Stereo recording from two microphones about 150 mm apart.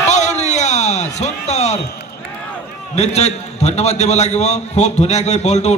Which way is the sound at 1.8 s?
90° left.